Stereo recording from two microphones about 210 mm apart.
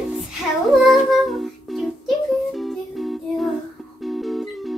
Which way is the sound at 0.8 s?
Centre (ahead or behind).